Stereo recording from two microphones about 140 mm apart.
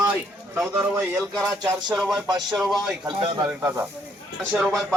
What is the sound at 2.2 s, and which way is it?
Speech, 30° right (ahead or behind).